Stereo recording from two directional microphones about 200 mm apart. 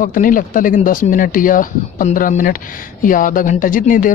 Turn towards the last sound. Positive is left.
turn(degrees=45)  # may be behind; listen again after turning